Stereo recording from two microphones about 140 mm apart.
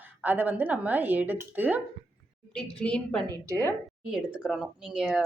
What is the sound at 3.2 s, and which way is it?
Speech, 20° left (ahead or behind).